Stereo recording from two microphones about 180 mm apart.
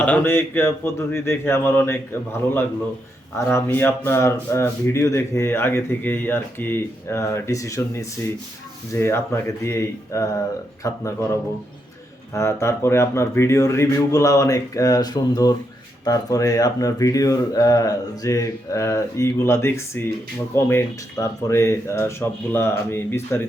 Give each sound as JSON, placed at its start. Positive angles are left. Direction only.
{"t": 0.0, "sound": "speech", "side_deg": 10}
{"t": 12.3, "sound": "speech", "side_deg": 15}